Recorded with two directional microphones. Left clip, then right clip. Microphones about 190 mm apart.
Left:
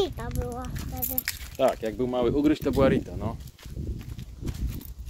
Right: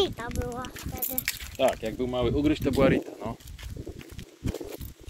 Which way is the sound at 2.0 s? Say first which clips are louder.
Left 3 dB; 35° left (ahead or behind).